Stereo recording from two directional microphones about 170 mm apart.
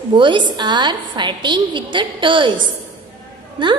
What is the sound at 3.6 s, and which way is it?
Speech, 30° right (ahead or behind).